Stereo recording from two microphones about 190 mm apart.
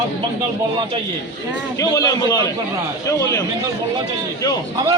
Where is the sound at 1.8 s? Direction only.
20° left (ahead or behind).